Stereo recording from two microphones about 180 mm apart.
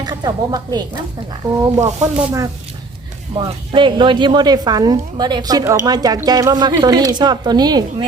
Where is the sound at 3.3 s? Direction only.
25° right (ahead or behind).